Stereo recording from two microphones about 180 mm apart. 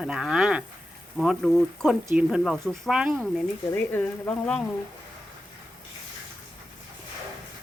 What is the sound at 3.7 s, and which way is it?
Speech, 10° left (ahead or behind).